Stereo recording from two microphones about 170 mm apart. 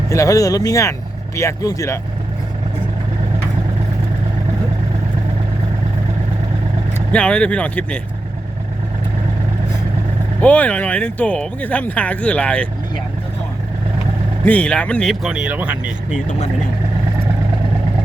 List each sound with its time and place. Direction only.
0.1 s speech: 20° left (ahead or behind)
7.1 s speech: 5° left (ahead or behind)
10.4 s speech: 10° left (ahead or behind)
14.4 s speech: 10° left (ahead or behind); by 16.2 s 5° right (ahead or behind)